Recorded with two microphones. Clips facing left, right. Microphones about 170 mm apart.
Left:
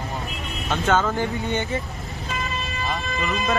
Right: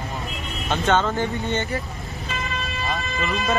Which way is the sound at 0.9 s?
5° left (ahead or behind).